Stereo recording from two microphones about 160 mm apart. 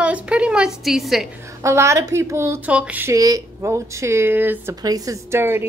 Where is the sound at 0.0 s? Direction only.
5° right (ahead or behind).